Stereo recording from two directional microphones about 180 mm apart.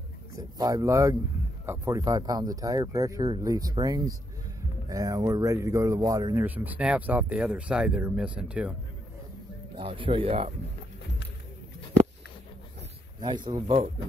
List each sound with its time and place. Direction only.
0.6 s speech: 20° right (ahead or behind)
9.8 s speech: 30° right (ahead or behind)
13.2 s speech: 25° right (ahead or behind)